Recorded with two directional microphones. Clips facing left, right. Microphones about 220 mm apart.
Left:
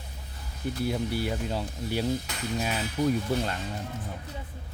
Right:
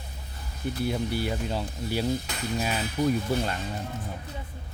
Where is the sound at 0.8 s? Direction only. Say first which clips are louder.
Right 1 dB; centre (ahead or behind).